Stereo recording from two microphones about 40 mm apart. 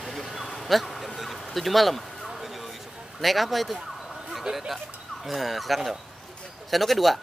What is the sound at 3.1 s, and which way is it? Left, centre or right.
Speech, centre.